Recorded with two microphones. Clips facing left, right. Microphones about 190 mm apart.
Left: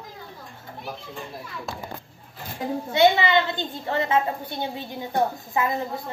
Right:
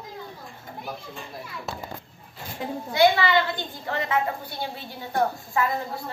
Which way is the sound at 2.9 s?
20° left (ahead or behind).